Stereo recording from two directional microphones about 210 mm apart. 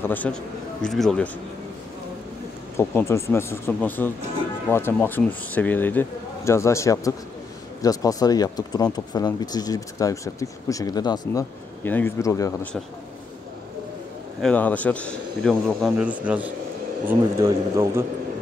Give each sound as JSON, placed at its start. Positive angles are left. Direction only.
{"t": 0.0, "sound": "speech", "side_deg": 10}
{"t": 2.8, "sound": "speech", "side_deg": 10}
{"t": 14.4, "sound": "a man's voice", "side_deg": 5}